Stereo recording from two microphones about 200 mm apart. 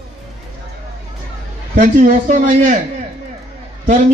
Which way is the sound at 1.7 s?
40° right (ahead or behind).